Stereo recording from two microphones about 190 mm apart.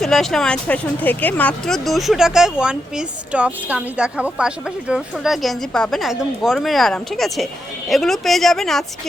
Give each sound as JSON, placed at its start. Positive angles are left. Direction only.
{"t": 0.0, "sound": "speech", "side_deg": 0}